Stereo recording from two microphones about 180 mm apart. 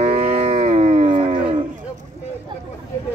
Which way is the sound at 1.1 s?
25° right (ahead or behind).